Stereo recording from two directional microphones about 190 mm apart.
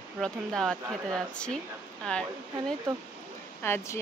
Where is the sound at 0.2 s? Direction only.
Centre (ahead or behind).